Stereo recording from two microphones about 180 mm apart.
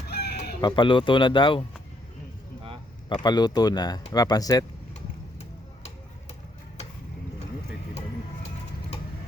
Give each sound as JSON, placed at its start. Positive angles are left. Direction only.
{"t": 0.1, "sound": "chicken", "side_deg": 65}
{"t": 0.6, "sound": "speech", "side_deg": 25}
{"t": 3.1, "sound": "speech", "side_deg": 25}
{"t": 4.9, "sound": "a sound", "side_deg": 40}